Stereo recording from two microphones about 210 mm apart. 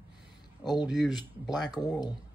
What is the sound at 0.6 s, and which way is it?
Speech, 20° left (ahead or behind).